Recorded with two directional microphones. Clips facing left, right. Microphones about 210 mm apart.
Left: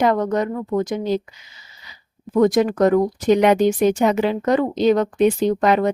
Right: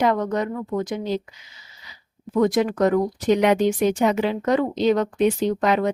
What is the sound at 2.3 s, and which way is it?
Speech, 45° left (ahead or behind).